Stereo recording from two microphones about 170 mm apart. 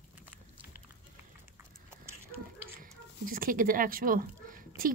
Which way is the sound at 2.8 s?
55° right (ahead or behind).